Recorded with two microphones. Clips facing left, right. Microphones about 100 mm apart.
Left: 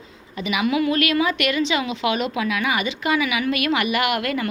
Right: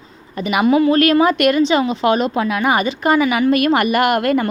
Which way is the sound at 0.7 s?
35° right (ahead or behind).